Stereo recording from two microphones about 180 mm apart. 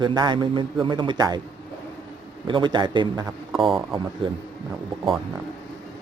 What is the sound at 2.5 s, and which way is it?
Speech, 25° right (ahead or behind).